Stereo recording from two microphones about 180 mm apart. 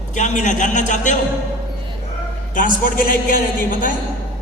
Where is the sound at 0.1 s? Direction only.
40° left (ahead or behind).